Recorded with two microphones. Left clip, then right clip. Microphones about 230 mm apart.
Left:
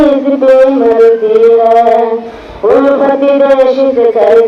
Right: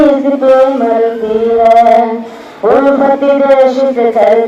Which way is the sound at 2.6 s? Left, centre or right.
Right.